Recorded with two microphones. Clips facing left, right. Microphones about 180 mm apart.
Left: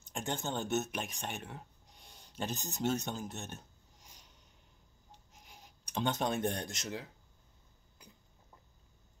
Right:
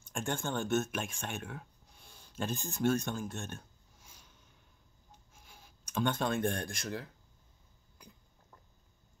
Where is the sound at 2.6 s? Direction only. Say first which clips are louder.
Right 4 dB; 20° left (ahead or behind).